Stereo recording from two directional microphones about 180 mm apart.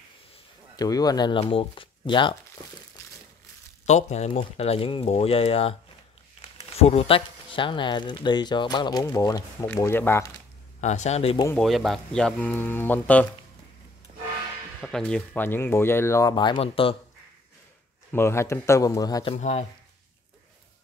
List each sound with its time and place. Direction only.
0.7 s speech: 20° left (ahead or behind)
3.8 s speech: 40° left (ahead or behind); by 10.3 s 15° left (ahead or behind)
10.8 s speech: 40° left (ahead or behind)
11.5 s speech: centre (ahead or behind)
14.8 s speech: 5° left (ahead or behind); by 16.9 s 30° left (ahead or behind)
18.1 s speech: 15° left (ahead or behind)
19.3 s speech: 35° left (ahead or behind)